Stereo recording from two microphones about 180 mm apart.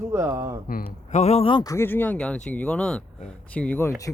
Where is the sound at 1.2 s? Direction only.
35° left (ahead or behind).